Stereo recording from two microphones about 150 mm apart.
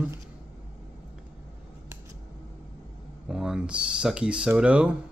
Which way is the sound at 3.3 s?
5° right (ahead or behind).